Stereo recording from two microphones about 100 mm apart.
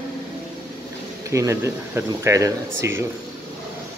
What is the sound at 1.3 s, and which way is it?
Speech, 30° right (ahead or behind).